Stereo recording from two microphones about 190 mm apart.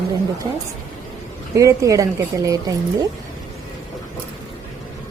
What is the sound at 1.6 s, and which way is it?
A woman's voice, 15° right (ahead or behind).